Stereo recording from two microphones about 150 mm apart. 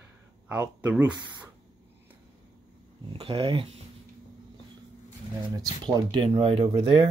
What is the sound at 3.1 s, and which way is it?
Speech, 35° right (ahead or behind).